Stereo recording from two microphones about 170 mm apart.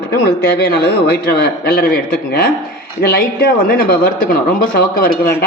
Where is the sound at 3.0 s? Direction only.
60° left (ahead or behind).